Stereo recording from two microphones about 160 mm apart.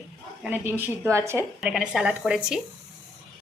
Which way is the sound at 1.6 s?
5° right (ahead or behind).